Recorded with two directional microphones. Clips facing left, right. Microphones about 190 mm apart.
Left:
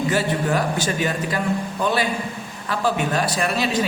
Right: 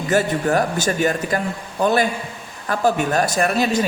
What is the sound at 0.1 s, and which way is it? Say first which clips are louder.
A man's voice: right 7 dB; 45° right (ahead or behind).